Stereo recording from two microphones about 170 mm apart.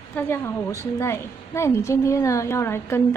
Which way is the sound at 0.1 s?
15° left (ahead or behind).